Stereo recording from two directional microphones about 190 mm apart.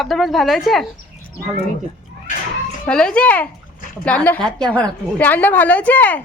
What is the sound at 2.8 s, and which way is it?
A woman's voice, 5° left (ahead or behind).